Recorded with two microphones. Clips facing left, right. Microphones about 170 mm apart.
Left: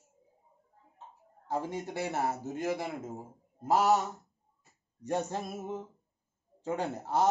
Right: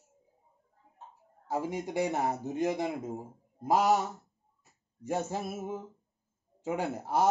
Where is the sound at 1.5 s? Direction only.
10° right (ahead or behind).